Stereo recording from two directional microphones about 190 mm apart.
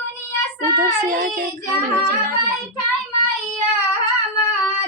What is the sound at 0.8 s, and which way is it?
Child singing, 45° right (ahead or behind).